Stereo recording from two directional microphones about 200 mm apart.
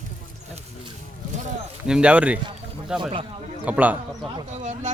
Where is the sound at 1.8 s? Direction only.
5° right (ahead or behind).